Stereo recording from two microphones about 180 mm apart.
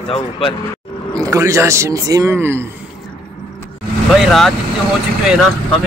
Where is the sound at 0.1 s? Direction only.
30° left (ahead or behind).